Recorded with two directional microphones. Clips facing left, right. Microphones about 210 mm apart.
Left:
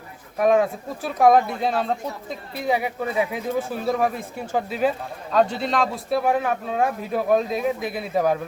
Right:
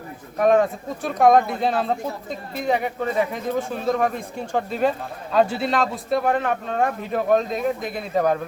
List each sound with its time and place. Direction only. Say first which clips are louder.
0.3 s speech: right 1 dB; centre (ahead or behind)